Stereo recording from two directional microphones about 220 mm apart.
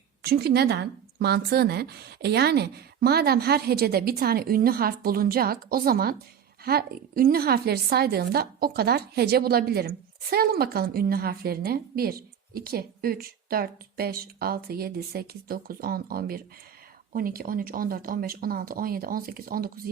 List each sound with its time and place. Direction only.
0.2 s a woman's voice: 45° right (ahead or behind)